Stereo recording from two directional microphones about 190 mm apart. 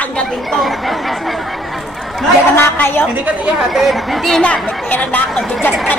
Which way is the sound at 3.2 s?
5° right (ahead or behind).